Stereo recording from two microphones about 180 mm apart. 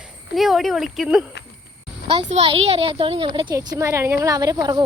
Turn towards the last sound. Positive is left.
turn(degrees=-20)  # may be behind; listen again after turning